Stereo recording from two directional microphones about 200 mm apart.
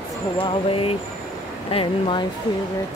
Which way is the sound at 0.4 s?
25° left (ahead or behind).